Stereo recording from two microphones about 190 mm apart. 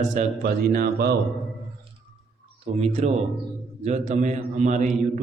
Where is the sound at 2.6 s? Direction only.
35° right (ahead or behind).